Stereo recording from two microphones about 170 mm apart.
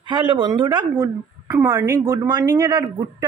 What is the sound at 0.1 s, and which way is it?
A woman's voice, 25° right (ahead or behind).